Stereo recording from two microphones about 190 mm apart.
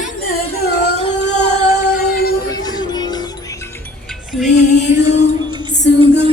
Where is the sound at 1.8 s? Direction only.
55° left (ahead or behind).